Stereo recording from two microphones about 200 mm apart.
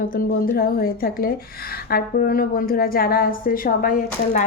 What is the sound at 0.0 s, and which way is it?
A woman's voice, 45° left (ahead or behind).